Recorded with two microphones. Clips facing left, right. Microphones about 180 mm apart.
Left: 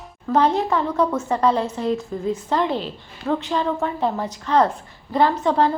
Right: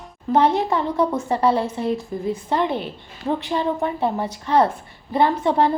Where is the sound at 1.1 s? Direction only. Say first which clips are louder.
Even; 30° right (ahead or behind).